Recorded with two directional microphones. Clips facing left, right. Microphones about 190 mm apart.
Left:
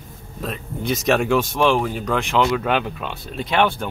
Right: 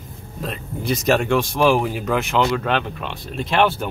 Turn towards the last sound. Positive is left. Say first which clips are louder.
# right 1 dB
turn(degrees=0)  # may be behind; listen again after turning